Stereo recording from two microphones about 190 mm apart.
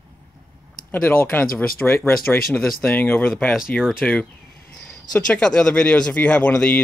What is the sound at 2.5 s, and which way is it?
Speech, centre (ahead or behind).